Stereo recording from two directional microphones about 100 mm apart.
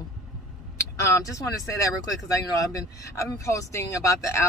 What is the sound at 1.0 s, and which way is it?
Speech, 30° left (ahead or behind).